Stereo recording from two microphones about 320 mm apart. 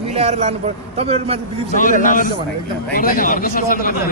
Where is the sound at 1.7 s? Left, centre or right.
Left.